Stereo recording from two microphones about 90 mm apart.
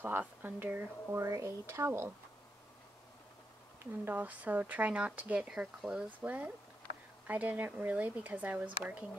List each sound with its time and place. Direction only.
0.0 s speech: 20° right (ahead or behind)
3.8 s speech: 25° right (ahead or behind); by 6.0 s 5° right (ahead or behind)
6.0 s speech: 15° right (ahead or behind)